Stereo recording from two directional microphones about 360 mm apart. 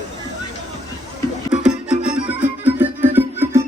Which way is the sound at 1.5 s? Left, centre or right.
Centre.